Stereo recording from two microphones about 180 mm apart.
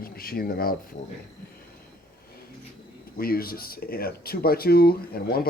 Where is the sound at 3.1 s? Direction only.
55° left (ahead or behind).